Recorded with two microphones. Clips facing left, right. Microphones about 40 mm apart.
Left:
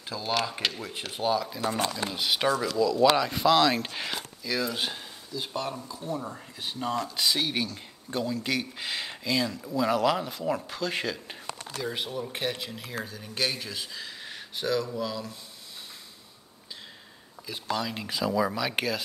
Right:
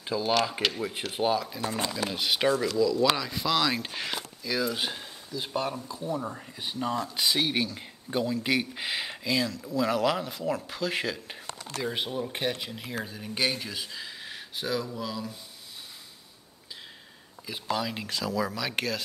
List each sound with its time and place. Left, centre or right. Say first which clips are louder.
0.2 s speech: right 2 dB; centre
1.6 s speech: left 2 dB; centre
2.0 s speech: right 2 dB; centre
11.8 s speech: right 2 dB; centre
17.5 s speech: even; centre
18.1 s speech: left 4 dB; centre